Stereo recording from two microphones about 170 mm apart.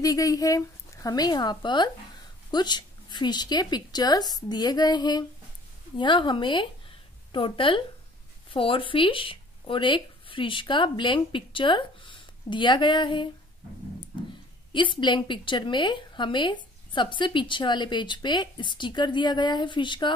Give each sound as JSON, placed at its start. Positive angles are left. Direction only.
{"t": 0.0, "sound": "a woman's voice", "side_deg": 20}
{"t": 14.7, "sound": "a woman's voice", "side_deg": 30}